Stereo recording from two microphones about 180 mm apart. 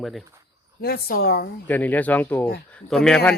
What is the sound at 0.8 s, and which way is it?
Speech, 60° left (ahead or behind).